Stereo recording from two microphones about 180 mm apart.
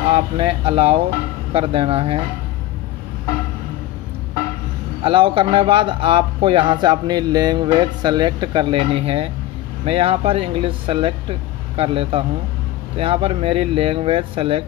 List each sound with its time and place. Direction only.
0.1 s speech: 30° right (ahead or behind)
5.0 s speech: 30° right (ahead or behind)